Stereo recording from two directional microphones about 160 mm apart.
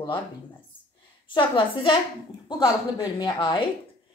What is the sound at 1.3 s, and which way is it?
Speech, 30° left (ahead or behind).